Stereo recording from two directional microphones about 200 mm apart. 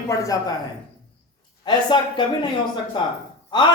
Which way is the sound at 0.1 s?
15° left (ahead or behind).